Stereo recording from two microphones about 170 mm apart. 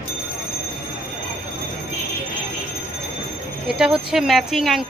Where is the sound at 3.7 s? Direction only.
5° right (ahead or behind).